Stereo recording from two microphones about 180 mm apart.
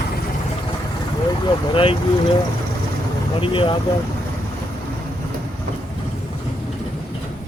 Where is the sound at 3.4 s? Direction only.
30° left (ahead or behind).